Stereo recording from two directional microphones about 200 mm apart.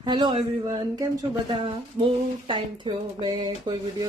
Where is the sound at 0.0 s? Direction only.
20° right (ahead or behind).